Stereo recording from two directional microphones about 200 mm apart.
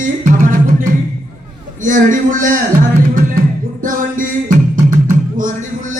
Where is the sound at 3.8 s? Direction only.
40° right (ahead or behind).